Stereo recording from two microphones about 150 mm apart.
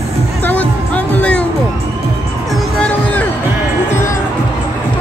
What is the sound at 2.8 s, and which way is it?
Music, 10° left (ahead or behind).